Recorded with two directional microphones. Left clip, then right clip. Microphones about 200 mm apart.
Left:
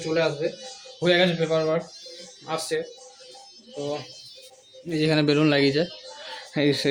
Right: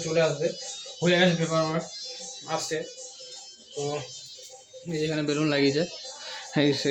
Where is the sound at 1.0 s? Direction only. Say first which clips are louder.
Left 2 dB; 10° left (ahead or behind).